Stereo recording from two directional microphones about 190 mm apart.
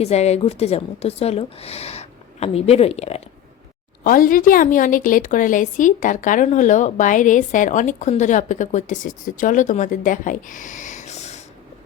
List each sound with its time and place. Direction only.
0.0 s a woman's voice: 35° left (ahead or behind)
4.0 s a woman's voice: 45° left (ahead or behind)